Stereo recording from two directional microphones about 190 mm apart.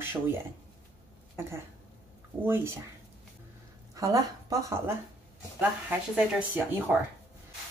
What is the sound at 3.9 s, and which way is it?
Speech, 15° right (ahead or behind).